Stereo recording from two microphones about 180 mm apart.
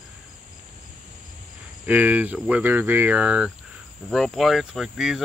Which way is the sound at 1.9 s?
10° right (ahead or behind).